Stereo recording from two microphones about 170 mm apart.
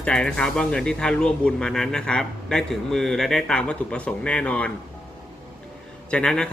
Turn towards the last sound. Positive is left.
turn(degrees=5)  # may be behind; listen again after turning